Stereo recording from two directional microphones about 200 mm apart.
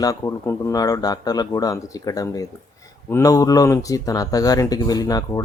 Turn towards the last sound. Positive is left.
turn(degrees=20)  # may be behind; listen again after turning